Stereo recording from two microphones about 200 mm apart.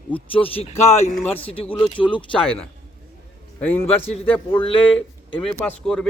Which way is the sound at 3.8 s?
30° left (ahead or behind).